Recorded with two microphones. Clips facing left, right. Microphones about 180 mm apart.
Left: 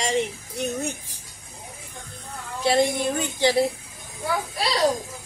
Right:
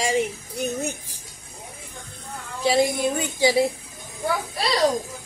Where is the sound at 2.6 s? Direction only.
5° right (ahead or behind).